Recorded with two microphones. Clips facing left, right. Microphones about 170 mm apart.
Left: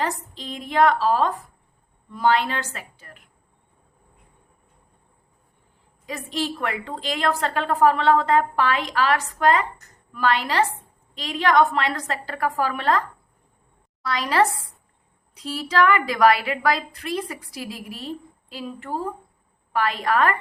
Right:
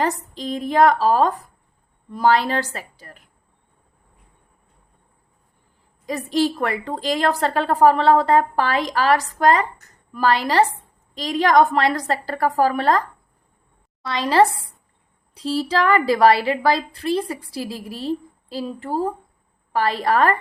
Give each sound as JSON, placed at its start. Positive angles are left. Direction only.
{"t": 0.0, "sound": "a woman's voice", "side_deg": -40}
{"t": 6.1, "sound": "a woman's voice", "side_deg": -40}
{"t": 14.0, "sound": "a woman's voice", "side_deg": -25}